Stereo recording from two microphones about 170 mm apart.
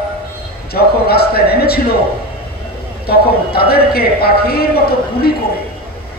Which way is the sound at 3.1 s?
65° left (ahead or behind).